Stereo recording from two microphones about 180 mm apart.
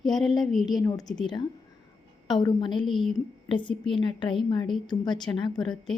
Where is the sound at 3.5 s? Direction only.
25° left (ahead or behind).